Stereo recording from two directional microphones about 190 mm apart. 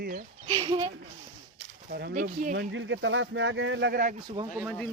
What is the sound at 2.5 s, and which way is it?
Speech, 75° right (ahead or behind).